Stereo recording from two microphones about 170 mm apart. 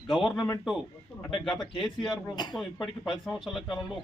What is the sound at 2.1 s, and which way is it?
Speech, 25° left (ahead or behind).